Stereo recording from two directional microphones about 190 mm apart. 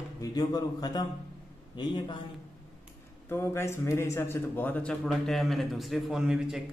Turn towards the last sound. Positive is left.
turn(degrees=-5)  # may be behind; listen again after turning